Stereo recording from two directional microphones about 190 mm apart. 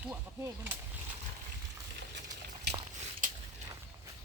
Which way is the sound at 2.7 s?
60° right (ahead or behind).